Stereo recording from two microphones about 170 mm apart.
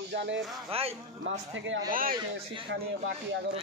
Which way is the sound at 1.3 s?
90° right.